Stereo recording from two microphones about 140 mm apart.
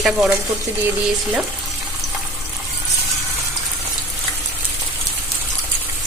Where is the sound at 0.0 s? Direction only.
5° right (ahead or behind).